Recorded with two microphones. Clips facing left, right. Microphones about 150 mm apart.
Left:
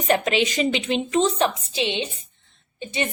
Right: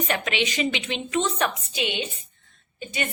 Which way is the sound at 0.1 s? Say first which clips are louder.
Left 10 dB; 40° left (ahead or behind).